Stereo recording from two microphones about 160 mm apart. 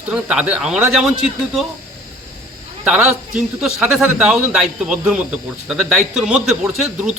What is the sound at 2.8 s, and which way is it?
A man's voice, 10° right (ahead or behind).